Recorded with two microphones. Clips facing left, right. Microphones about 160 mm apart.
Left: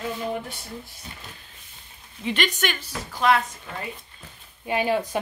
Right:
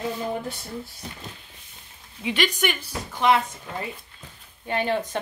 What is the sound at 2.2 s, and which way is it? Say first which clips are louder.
Speech: right 1 dB; 10° right (ahead or behind).